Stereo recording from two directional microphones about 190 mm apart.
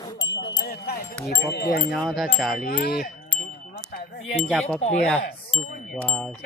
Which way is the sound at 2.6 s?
50° left (ahead or behind).